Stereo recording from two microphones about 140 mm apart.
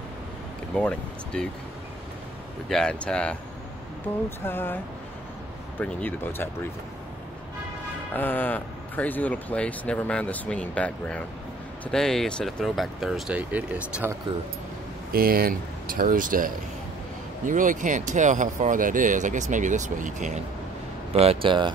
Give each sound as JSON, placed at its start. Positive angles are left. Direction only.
{"t": 0.7, "sound": "speech", "side_deg": 5}
{"t": 2.7, "sound": "speech", "side_deg": 5}
{"t": 4.4, "sound": "speech", "side_deg": 15}
{"t": 5.8, "sound": "speech", "side_deg": 10}
{"t": 8.1, "sound": "speech", "side_deg": 15}
{"t": 15.1, "sound": "speech", "side_deg": -90}
{"t": 21.1, "sound": "speech", "side_deg": -45}